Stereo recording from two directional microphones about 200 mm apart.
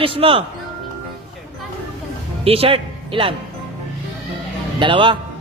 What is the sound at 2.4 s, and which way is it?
Speech, 30° right (ahead or behind).